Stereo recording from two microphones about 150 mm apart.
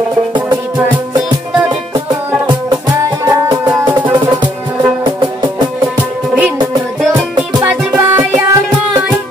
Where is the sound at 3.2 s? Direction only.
20° right (ahead or behind).